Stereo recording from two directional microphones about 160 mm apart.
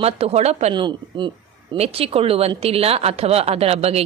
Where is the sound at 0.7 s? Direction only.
30° right (ahead or behind).